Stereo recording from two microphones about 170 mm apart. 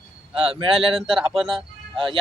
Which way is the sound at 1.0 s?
Centre (ahead or behind).